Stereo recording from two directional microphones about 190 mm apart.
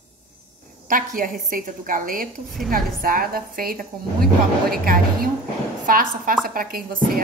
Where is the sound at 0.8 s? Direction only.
45° right (ahead or behind).